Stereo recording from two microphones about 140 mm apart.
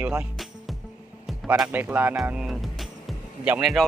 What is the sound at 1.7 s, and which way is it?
Speech, 15° right (ahead or behind).